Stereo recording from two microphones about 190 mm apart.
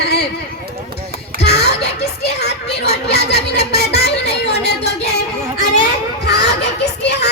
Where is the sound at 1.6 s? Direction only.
60° left (ahead or behind).